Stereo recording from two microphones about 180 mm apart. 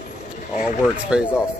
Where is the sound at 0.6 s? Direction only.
5° right (ahead or behind).